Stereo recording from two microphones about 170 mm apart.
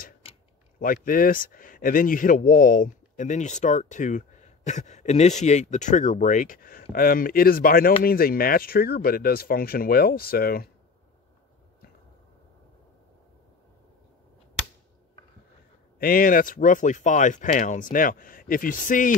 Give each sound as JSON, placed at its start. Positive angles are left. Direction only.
{"t": 0.7, "sound": "speech", "side_deg": 55}
{"t": 16.0, "sound": "speech", "side_deg": 55}